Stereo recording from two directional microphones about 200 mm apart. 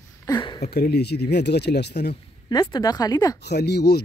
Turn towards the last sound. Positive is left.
turn(degrees=55)  # may be behind; listen again after turning